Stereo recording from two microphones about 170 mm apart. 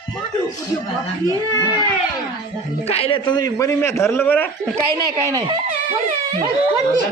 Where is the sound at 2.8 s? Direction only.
35° left (ahead or behind); by 4.4 s 10° left (ahead or behind).